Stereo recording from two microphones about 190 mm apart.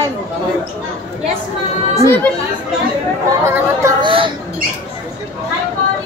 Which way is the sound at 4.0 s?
25° right (ahead or behind).